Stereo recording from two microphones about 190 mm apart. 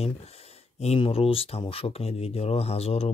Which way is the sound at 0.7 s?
30° left (ahead or behind).